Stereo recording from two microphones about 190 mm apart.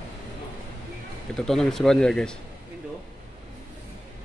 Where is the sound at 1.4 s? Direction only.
5° left (ahead or behind).